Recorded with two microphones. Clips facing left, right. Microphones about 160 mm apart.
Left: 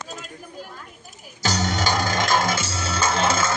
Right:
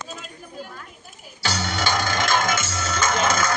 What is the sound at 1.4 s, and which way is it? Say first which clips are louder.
Music: left 2 dB; 40° left (ahead or behind).